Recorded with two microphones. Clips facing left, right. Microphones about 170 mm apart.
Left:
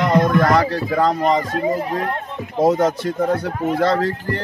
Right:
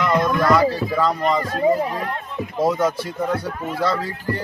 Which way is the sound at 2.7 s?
45° left (ahead or behind).